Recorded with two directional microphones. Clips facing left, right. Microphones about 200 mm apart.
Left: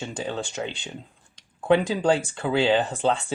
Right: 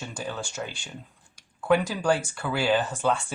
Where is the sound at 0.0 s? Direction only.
25° left (ahead or behind).